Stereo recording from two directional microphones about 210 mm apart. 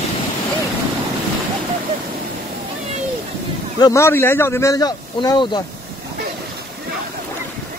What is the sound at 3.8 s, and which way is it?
Speech, 15° left (ahead or behind).